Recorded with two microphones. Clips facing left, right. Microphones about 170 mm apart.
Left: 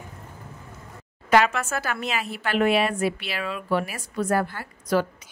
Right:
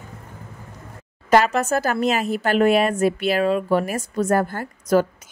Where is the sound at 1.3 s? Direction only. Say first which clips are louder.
Right 4 dB; 40° right (ahead or behind).